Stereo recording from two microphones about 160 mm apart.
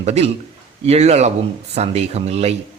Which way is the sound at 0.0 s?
40° right (ahead or behind).